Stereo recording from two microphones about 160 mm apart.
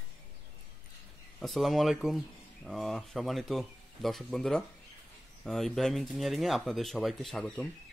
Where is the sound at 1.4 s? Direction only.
Centre (ahead or behind).